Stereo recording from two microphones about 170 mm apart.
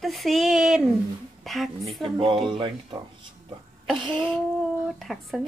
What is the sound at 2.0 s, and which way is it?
Speech, 30° right (ahead or behind).